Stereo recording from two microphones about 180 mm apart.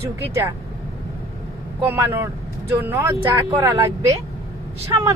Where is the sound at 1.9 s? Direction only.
15° right (ahead or behind).